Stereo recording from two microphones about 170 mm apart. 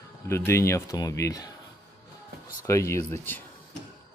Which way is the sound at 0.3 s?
15° left (ahead or behind).